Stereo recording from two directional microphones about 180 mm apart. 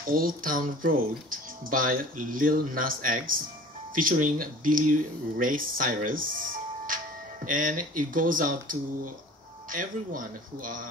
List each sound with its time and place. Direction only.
0.0 s speech: 50° right (ahead or behind)